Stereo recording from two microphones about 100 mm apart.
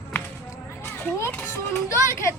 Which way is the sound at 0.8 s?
20° left (ahead or behind).